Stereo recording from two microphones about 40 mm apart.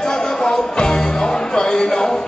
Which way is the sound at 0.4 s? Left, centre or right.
Centre.